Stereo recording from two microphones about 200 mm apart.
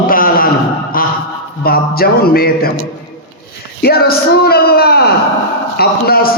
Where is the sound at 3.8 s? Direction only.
50° left (ahead or behind).